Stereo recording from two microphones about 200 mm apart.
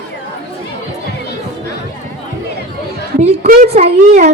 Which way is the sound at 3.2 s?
35° right (ahead or behind).